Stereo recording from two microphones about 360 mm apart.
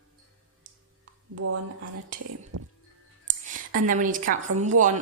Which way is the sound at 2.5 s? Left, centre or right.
Right.